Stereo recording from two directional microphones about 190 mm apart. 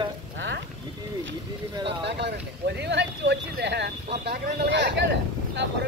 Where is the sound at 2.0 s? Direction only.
60° right (ahead or behind).